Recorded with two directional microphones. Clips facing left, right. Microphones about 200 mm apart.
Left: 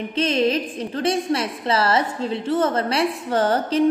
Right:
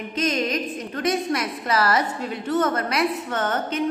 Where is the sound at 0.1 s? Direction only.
30° left (ahead or behind).